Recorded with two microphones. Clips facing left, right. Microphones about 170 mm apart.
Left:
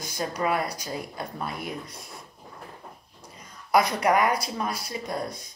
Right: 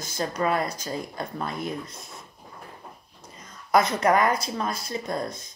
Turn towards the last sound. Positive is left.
turn(degrees=15)  # may be behind; listen again after turning